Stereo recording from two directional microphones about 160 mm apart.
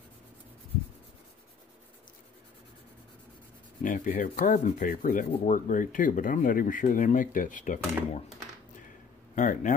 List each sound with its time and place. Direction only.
3.8 s speech: 55° left (ahead or behind)
9.3 s speech: 50° left (ahead or behind)